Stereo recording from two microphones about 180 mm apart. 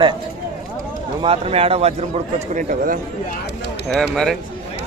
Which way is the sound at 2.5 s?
50° right (ahead or behind).